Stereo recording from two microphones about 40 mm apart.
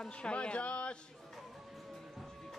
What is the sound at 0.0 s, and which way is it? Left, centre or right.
Speech, left.